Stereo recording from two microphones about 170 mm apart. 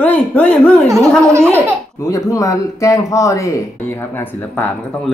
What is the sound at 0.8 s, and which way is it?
Laughter, 20° right (ahead or behind).